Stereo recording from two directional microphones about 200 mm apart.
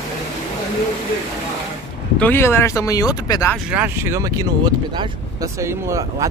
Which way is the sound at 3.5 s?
5° right (ahead or behind).